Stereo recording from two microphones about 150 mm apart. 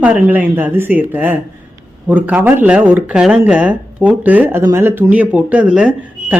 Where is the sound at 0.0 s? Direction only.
10° right (ahead or behind).